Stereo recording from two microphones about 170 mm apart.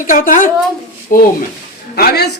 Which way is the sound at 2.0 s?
70° left (ahead or behind).